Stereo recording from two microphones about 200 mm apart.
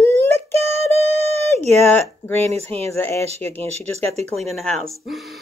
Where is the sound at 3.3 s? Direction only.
30° right (ahead or behind).